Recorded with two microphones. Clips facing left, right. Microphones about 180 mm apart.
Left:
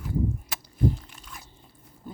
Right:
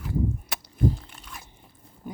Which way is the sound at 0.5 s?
65° right (ahead or behind).